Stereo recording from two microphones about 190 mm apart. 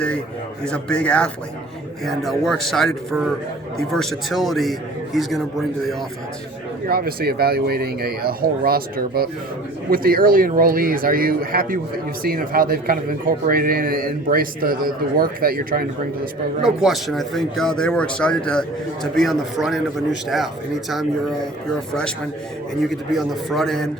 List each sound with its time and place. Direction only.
0.6 s speech: 5° left (ahead or behind)
6.8 s a man's voice: 50° right (ahead or behind)
16.6 s speech: centre (ahead or behind)
20.9 s speech: centre (ahead or behind)
22.9 s speech: centre (ahead or behind)